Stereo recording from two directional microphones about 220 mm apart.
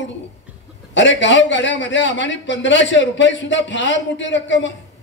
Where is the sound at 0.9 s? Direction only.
55° left (ahead or behind).